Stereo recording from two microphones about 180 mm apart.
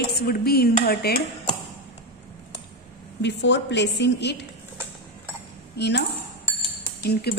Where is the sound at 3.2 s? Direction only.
75° left (ahead or behind).